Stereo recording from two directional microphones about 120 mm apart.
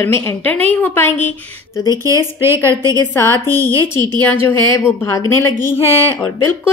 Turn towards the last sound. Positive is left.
turn(degrees=20)  # may be behind; listen again after turning